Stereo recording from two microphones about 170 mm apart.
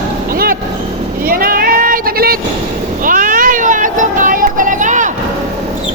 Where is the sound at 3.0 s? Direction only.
50° right (ahead or behind).